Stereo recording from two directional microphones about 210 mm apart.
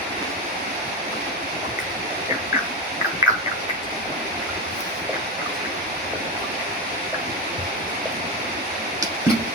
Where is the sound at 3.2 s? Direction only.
15° right (ahead or behind).